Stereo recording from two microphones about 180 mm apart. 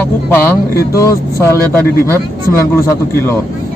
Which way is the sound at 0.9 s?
15° left (ahead or behind).